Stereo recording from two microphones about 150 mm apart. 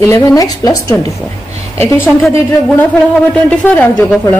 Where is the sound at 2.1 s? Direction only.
10° left (ahead or behind).